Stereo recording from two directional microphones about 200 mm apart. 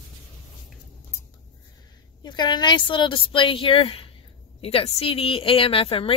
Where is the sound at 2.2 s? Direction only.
20° left (ahead or behind).